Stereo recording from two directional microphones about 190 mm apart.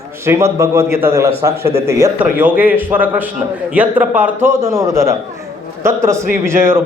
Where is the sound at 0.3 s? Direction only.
15° right (ahead or behind).